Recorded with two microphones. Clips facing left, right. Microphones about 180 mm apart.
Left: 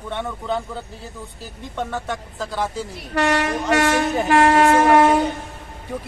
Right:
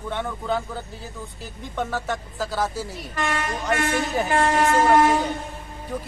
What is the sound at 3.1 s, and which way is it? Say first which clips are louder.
Speech: left 7 dB; 75° left (ahead or behind).